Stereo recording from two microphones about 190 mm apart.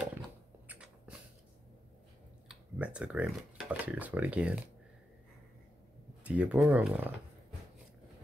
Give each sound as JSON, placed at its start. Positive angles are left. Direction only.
{"t": 0.1, "sound": "a sound", "side_deg": -5}
{"t": 2.4, "sound": "speech", "side_deg": -5}
{"t": 6.2, "sound": "speech", "side_deg": -10}